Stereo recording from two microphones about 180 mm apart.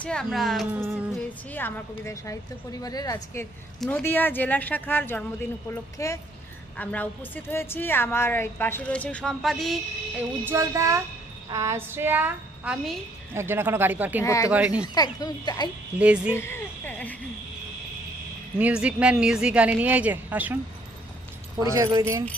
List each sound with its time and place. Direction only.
0.0 s a woman's voice: 5° left (ahead or behind)
0.7 s speech: 10° right (ahead or behind)
1.5 s a woman's voice: 10° left (ahead or behind)
3.8 s a woman's voice: 5° left (ahead or behind)
10.4 s speech: 15° right (ahead or behind)
14.2 s a woman's voice: 15° left (ahead or behind)
14.5 s speech: 5° right (ahead or behind)
14.9 s speech: 20° left (ahead or behind)
16.0 s speech: 5° right (ahead or behind)
16.3 s a sound: 15° left (ahead or behind)
18.6 s a woman's voice: 5° right (ahead or behind)
21.7 s speech: 15° right (ahead or behind)